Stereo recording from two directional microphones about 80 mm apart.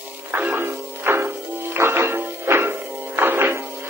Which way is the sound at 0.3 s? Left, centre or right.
Right.